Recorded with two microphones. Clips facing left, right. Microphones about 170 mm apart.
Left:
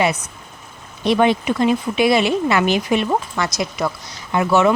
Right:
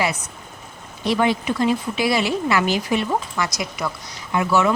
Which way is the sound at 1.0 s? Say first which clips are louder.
Left 4 dB; 20° left (ahead or behind).